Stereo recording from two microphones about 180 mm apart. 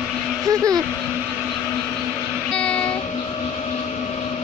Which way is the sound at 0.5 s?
20° right (ahead or behind).